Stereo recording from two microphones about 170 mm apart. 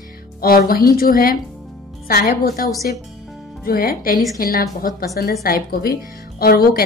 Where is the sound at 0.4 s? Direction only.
60° left (ahead or behind).